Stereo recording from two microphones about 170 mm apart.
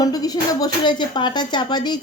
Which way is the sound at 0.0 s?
20° left (ahead or behind).